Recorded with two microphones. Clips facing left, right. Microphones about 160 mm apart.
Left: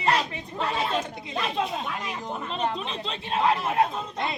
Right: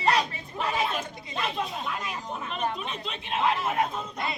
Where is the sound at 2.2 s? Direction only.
30° left (ahead or behind).